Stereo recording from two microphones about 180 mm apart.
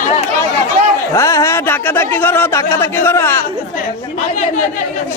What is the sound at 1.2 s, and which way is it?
Speech, 15° left (ahead or behind).